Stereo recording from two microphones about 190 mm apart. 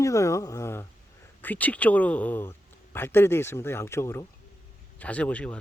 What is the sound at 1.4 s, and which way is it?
A man's voice, 10° left (ahead or behind).